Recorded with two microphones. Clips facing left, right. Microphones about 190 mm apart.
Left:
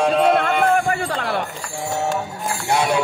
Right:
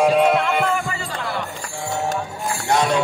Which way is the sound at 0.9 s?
60° left (ahead or behind).